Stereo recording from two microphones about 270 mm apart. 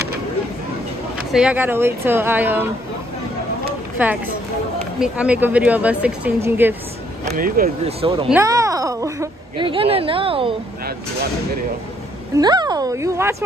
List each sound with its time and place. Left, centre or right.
1.3 s speech: centre
4.0 s speech: centre
7.2 s speech: right
8.3 s speech: centre
12.4 s speech: centre